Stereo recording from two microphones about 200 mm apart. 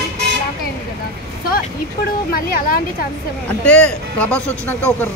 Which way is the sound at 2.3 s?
45° left (ahead or behind).